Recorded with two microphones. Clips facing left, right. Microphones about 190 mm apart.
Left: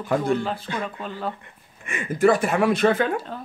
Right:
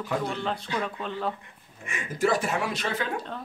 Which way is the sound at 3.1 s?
5° left (ahead or behind).